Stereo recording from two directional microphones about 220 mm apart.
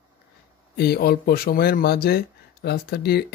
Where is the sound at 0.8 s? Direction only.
45° left (ahead or behind).